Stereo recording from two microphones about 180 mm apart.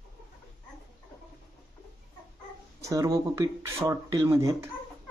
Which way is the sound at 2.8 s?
20° right (ahead or behind).